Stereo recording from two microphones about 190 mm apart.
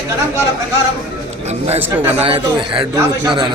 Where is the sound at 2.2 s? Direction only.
30° right (ahead or behind).